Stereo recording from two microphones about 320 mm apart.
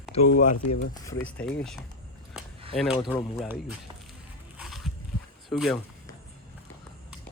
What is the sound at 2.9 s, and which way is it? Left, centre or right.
Speech, centre.